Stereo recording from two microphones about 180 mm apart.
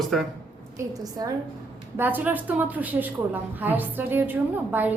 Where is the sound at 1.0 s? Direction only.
20° right (ahead or behind).